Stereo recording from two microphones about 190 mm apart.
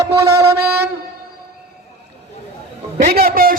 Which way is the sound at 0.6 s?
55° right (ahead or behind).